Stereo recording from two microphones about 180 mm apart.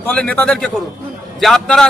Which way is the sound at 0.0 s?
10° left (ahead or behind).